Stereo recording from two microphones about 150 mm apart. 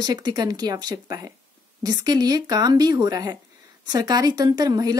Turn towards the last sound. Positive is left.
turn(degrees=-25)  # may be behind; listen again after turning